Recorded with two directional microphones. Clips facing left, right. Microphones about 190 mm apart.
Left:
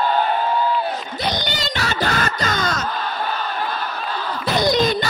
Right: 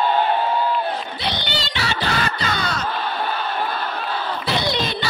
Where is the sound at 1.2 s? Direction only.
45° left (ahead or behind).